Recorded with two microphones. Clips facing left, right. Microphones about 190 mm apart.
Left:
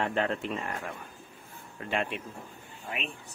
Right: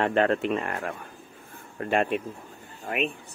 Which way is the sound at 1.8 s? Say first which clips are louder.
Right 7 dB; 50° right (ahead or behind).